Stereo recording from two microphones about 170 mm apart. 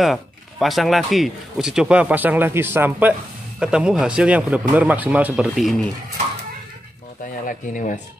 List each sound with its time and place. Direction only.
0.0 s speech: centre (ahead or behind)
7.4 s speech: 50° left (ahead or behind)